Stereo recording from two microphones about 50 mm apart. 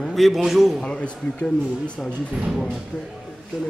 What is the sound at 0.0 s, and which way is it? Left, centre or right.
Speech, centre.